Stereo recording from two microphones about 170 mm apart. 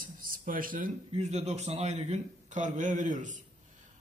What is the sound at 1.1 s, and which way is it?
A man's voice, 40° right (ahead or behind).